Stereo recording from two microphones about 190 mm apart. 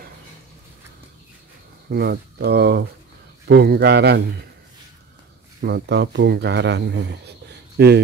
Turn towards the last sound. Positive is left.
turn(degrees=-55)  # may be behind; listen again after turning